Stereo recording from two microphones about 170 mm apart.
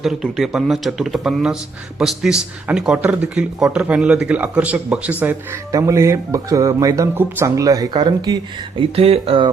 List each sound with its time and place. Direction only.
0.0 s speech: centre (ahead or behind); by 8.4 s 25° right (ahead or behind)
8.8 s speech: 35° right (ahead or behind)